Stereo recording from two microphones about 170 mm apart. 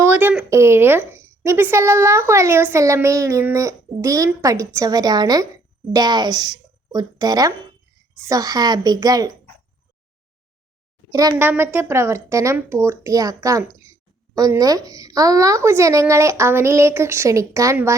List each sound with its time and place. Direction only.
0.0 s a woman's voice: 10° right (ahead or behind)
11.1 s a woman's voice: 20° right (ahead or behind)